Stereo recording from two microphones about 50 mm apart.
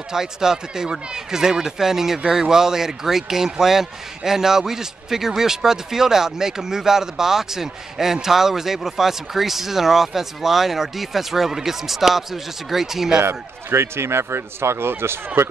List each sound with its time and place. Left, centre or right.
0.1 s speech: centre
13.2 s speech: right